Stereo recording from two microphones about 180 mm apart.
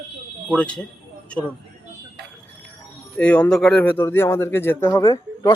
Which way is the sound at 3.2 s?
5° left (ahead or behind).